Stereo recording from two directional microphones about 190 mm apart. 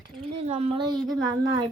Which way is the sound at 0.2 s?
30° right (ahead or behind).